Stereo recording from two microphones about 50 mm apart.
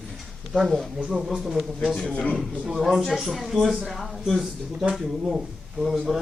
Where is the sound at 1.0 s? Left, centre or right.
Right.